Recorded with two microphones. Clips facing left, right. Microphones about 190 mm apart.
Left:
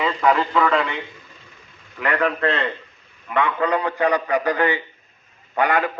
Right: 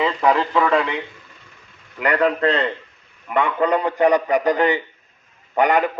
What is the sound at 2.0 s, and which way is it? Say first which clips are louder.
Speech: right 3 dB; 25° right (ahead or behind).